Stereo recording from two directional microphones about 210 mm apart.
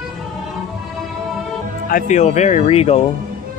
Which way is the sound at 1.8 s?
40° left (ahead or behind).